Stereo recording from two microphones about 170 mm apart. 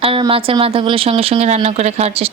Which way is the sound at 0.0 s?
30° right (ahead or behind).